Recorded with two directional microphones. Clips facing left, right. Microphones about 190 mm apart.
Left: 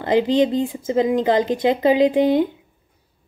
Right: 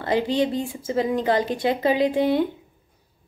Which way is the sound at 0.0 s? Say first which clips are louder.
Left 5 dB; 20° left (ahead or behind).